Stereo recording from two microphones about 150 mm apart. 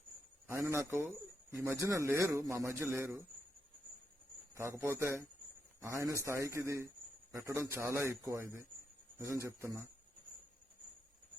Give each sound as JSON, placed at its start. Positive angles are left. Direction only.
{"t": 0.4, "sound": "a man's voice", "side_deg": -20}
{"t": 4.5, "sound": "a man's voice", "side_deg": -20}